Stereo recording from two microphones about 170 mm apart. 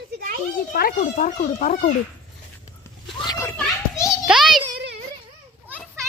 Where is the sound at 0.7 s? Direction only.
55° left (ahead or behind).